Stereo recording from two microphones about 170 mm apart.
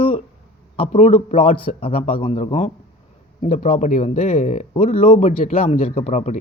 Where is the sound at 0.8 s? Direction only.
40° left (ahead or behind).